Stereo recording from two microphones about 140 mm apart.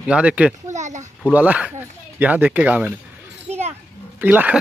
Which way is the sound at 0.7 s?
60° right (ahead or behind).